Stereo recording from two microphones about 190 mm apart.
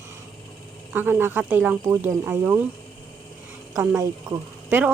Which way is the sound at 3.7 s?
15° right (ahead or behind).